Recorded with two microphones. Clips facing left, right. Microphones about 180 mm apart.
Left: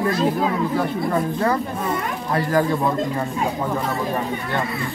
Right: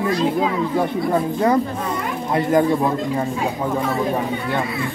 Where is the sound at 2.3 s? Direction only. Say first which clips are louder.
Right 3 dB; 20° right (ahead or behind).